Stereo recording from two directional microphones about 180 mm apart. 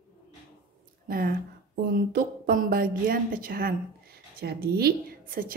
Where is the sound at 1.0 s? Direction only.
55° right (ahead or behind).